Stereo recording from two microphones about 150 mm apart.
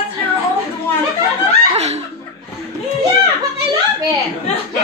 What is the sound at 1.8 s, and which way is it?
Chuckle, 45° right (ahead or behind).